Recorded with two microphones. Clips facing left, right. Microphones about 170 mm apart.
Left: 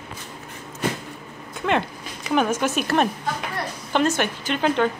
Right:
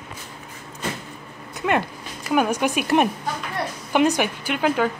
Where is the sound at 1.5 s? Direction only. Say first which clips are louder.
Right 1 dB; 5° right (ahead or behind).